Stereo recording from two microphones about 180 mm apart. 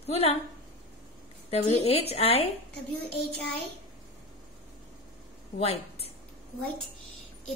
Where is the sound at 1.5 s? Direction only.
35° left (ahead or behind).